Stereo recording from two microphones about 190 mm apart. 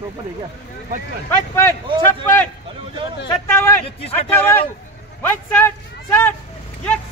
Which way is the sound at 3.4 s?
15° left (ahead or behind).